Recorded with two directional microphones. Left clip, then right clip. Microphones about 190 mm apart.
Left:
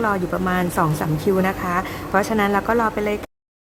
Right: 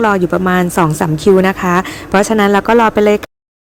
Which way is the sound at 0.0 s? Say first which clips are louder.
Right 9 dB; 35° right (ahead or behind).